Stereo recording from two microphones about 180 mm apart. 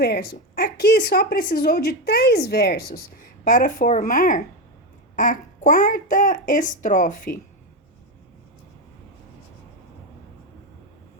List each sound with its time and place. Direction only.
0.0 s speech: 60° left (ahead or behind)
3.4 s a child's voice: 50° left (ahead or behind)